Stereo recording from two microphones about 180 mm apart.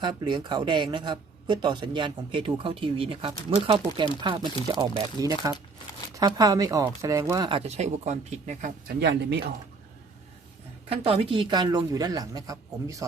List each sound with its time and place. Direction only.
0.0 s speech: 25° right (ahead or behind)
9.0 s speech: 70° right (ahead or behind)
10.8 s speech: 30° right (ahead or behind)